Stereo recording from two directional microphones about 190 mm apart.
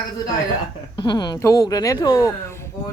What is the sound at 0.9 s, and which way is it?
Speech, 20° left (ahead or behind).